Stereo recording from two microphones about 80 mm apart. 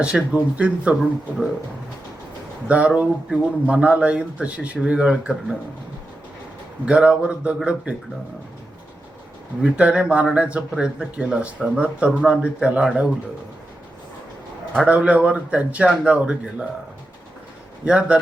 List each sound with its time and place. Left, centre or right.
0.0 s speech: centre
2.6 s speech: centre
6.8 s speech: centre
9.6 s speech: centre
14.8 s speech: centre
17.8 s speech: centre